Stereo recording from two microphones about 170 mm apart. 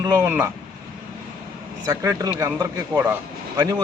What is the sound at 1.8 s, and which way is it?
A man's voice, 15° right (ahead or behind).